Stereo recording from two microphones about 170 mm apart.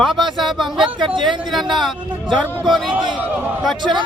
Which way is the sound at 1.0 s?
25° right (ahead or behind).